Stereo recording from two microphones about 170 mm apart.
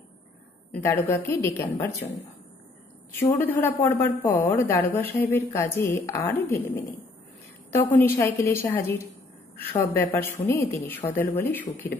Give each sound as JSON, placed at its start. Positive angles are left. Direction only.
{"t": 0.7, "sound": "a woman's voice", "side_deg": 10}
{"t": 3.3, "sound": "a woman's voice", "side_deg": 15}
{"t": 8.0, "sound": "a woman's voice", "side_deg": 15}